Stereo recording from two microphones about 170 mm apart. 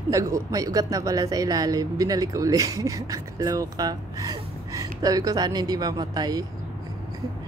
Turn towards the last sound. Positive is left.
turn(degrees=-20)  # may be behind; listen again after turning